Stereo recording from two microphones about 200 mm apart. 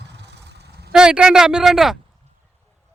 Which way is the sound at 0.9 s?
5° right (ahead or behind).